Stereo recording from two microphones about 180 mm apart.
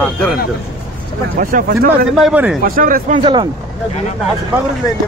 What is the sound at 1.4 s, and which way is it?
Speech, 50° right (ahead or behind).